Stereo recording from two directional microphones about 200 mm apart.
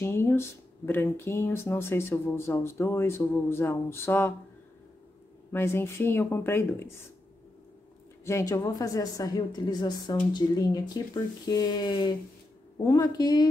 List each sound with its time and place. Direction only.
0.0 s speech: 10° left (ahead or behind)
5.5 s speech: 10° left (ahead or behind)
8.3 s speech: 15° left (ahead or behind)